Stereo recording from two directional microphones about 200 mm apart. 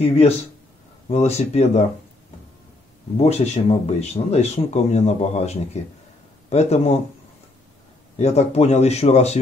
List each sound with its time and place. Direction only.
0.0 s speech: 30° left (ahead or behind)
3.2 s speech: 30° left (ahead or behind)
8.2 s speech: 30° left (ahead or behind)